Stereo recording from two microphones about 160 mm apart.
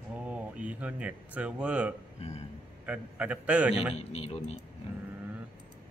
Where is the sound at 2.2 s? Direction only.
40° left (ahead or behind).